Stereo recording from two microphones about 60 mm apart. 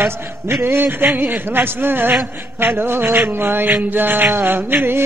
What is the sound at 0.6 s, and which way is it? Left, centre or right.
Mantra, right.